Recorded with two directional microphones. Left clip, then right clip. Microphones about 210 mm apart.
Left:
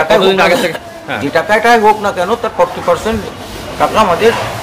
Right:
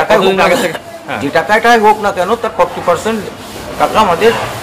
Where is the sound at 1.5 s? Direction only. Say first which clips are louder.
Even; 5° right (ahead or behind).